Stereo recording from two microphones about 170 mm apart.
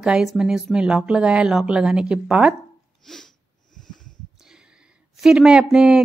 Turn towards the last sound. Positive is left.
turn(degrees=-5)  # may be behind; listen again after turning